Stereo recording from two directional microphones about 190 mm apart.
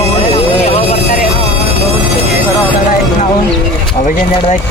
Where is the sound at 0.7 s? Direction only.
35° left (ahead or behind).